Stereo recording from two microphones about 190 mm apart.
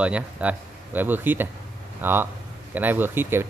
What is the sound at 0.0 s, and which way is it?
Speech, 5° right (ahead or behind).